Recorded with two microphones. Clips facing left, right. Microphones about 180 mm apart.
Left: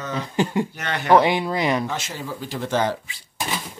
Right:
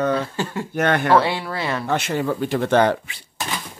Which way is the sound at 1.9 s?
60° right (ahead or behind).